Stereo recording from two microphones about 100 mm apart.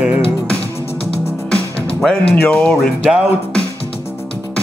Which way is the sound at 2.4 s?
10° left (ahead or behind).